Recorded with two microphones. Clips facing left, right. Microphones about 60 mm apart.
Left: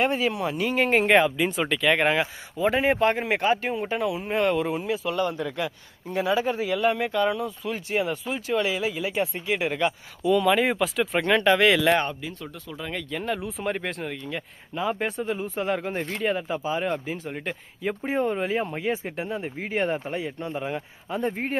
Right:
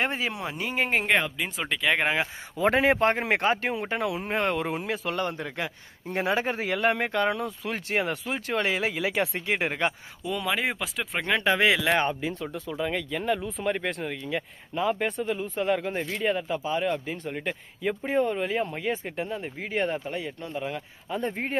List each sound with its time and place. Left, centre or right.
0.0 s speech: right
0.6 s speech: centre
0.9 s speech: centre
2.6 s speech: right
4.4 s speech: right
6.1 s speech: right
9.0 s speech: right
9.5 s speech: right
10.2 s speech: centre; by 12.7 s right
12.7 s speech: centre
21.1 s speech: centre